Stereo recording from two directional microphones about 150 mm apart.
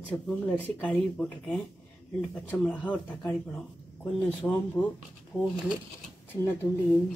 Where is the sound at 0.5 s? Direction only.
10° left (ahead or behind).